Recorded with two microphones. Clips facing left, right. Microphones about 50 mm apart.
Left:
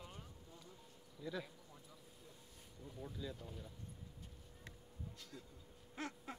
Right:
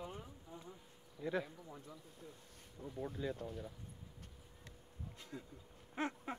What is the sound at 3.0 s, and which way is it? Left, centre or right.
Speech, right.